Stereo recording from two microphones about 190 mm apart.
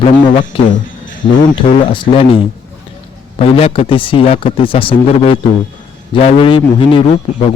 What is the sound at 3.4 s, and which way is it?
A man's voice, 30° left (ahead or behind).